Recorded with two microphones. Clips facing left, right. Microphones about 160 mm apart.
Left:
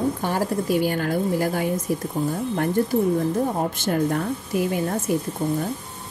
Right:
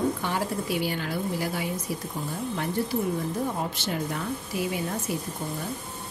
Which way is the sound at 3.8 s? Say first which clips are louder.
Left 8 dB; 50° left (ahead or behind).